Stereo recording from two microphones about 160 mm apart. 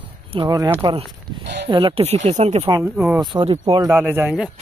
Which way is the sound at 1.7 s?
30° right (ahead or behind).